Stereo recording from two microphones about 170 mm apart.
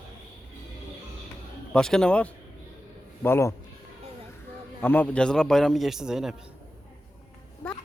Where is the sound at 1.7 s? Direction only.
5° left (ahead or behind).